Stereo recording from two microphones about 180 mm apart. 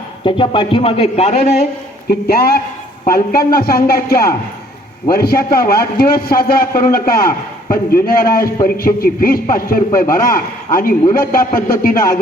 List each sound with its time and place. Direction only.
0.3 s speech: 30° left (ahead or behind)
2.0 s a man's voice: 60° left (ahead or behind)